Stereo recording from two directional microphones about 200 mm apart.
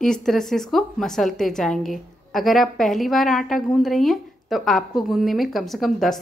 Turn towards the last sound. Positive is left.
turn(degrees=0)  # may be behind; listen again after turning